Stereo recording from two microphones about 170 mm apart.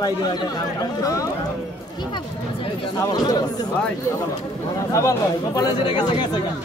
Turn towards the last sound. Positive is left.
turn(degrees=25)  # may be behind; listen again after turning